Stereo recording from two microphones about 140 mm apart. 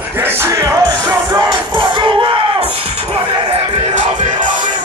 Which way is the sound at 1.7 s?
35° right (ahead or behind).